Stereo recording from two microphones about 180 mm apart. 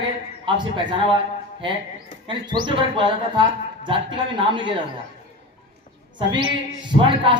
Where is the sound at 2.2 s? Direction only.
25° right (ahead or behind).